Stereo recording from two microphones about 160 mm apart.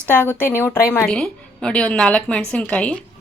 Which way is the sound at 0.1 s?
15° left (ahead or behind).